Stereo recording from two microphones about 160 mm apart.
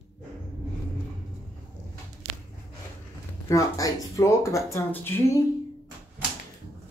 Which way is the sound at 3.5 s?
20° left (ahead or behind).